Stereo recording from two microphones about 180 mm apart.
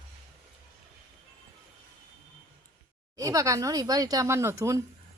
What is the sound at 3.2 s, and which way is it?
A woman's voice, 20° right (ahead or behind).